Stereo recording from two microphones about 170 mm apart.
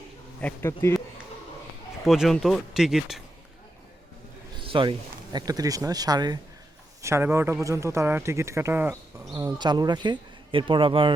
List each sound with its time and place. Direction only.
0.4 s speech: 15° left (ahead or behind)
2.0 s speech: centre (ahead or behind)
4.6 s speech: 30° right (ahead or behind); by 9.0 s 15° right (ahead or behind)
9.3 s speech: 25° right (ahead or behind)